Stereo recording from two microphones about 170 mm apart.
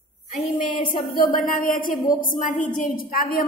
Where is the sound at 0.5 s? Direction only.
50° left (ahead or behind).